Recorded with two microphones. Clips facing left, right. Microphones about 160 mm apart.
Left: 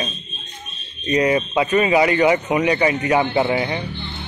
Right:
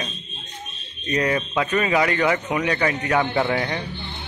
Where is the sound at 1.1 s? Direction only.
10° left (ahead or behind).